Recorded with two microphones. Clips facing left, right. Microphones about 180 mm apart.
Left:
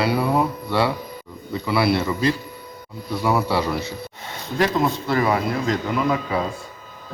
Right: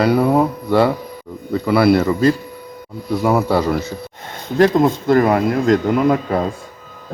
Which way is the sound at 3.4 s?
45° right (ahead or behind).